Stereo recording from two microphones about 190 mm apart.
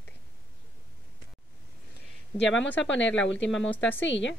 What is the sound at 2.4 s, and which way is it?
Speech, 75° left (ahead or behind).